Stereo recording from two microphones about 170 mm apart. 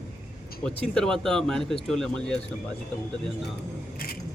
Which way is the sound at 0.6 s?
5° left (ahead or behind).